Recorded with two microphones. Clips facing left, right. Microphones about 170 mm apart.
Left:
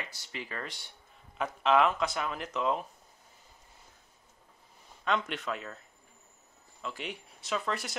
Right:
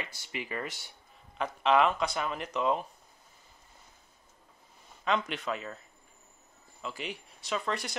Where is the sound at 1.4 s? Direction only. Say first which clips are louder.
Even; centre (ahead or behind).